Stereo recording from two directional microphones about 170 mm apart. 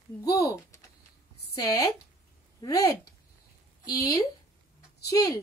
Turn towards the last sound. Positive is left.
turn(degrees=20)  # may be behind; listen again after turning